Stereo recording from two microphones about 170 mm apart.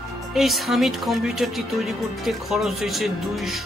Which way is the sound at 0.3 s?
Centre (ahead or behind).